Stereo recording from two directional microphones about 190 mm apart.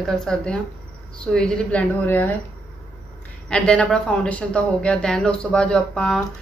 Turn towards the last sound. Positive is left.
turn(degrees=5)  # may be behind; listen again after turning